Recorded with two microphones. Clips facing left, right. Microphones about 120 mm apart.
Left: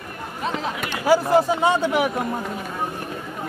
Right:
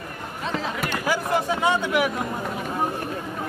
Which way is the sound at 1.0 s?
35° left (ahead or behind).